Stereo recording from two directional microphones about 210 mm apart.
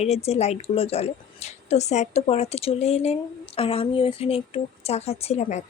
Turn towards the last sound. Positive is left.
turn(degrees=30)  # may be behind; listen again after turning